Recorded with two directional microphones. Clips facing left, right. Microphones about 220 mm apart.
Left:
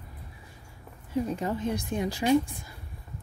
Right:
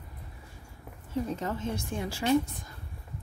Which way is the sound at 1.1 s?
10° left (ahead or behind).